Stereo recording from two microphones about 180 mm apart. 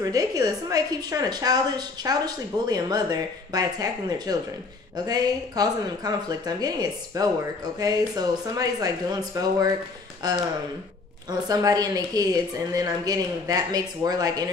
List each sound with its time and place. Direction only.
0.0 s a woman's voice: 20° right (ahead or behind)